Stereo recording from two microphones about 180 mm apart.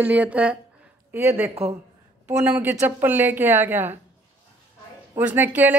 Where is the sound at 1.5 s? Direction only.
35° right (ahead or behind).